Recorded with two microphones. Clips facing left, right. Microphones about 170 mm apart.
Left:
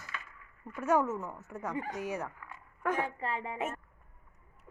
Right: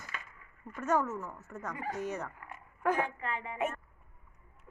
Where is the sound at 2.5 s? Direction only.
5° right (ahead or behind).